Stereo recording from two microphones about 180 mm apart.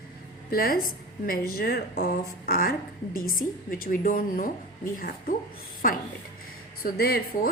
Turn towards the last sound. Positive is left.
turn(degrees=60)  # may be behind; listen again after turning